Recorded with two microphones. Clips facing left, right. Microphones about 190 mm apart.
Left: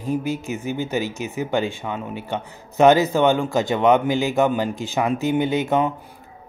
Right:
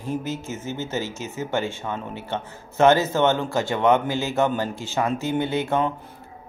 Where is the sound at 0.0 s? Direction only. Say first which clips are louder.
Left 4 dB; 15° left (ahead or behind).